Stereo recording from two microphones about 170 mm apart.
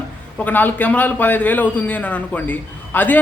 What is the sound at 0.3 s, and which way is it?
A man's voice, 10° left (ahead or behind).